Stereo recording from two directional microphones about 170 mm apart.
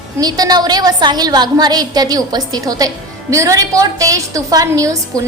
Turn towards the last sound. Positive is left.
turn(degrees=5)  # may be behind; listen again after turning